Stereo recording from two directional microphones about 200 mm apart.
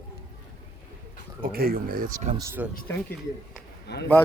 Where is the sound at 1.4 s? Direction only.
50° right (ahead or behind).